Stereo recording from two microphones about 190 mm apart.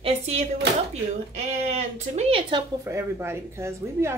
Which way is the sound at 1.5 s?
35° right (ahead or behind).